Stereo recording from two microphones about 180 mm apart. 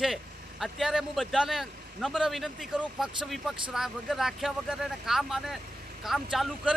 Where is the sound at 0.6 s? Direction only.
Centre (ahead or behind).